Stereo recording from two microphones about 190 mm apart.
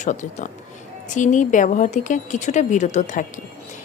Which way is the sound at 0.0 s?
40° left (ahead or behind).